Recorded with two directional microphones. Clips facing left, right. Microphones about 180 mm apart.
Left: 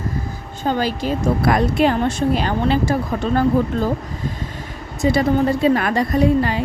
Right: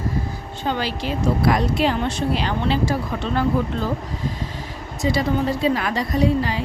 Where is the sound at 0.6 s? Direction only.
45° left (ahead or behind).